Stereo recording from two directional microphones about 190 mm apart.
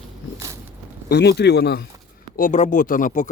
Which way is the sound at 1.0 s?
60° left (ahead or behind).